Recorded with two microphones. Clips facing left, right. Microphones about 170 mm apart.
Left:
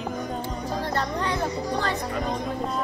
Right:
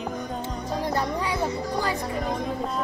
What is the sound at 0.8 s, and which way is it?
Music, 10° right (ahead or behind).